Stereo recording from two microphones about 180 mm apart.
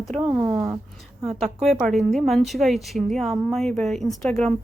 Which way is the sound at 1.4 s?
Centre (ahead or behind).